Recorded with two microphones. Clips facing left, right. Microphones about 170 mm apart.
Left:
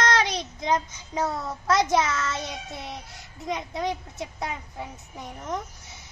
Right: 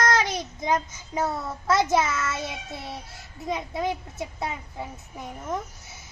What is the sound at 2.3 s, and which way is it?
Child singing, 20° left (ahead or behind).